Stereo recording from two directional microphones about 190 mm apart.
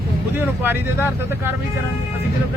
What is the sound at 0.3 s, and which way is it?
Speech, 10° right (ahead or behind).